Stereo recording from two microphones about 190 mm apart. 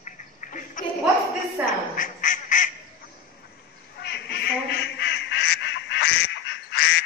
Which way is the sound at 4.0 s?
60° left (ahead or behind).